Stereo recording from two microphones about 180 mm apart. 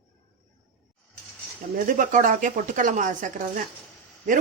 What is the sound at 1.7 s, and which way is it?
Speech, 50° right (ahead or behind).